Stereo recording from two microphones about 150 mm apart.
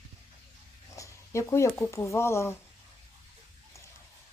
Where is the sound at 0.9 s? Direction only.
20° left (ahead or behind).